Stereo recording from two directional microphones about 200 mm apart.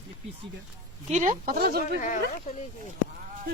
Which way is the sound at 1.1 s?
40° right (ahead or behind).